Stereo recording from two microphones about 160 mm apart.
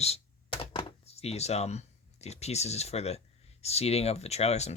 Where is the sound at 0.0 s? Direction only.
40° left (ahead or behind).